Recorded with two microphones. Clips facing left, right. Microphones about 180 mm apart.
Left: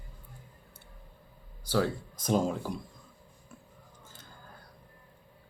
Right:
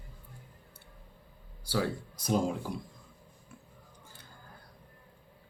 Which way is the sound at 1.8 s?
45° left (ahead or behind).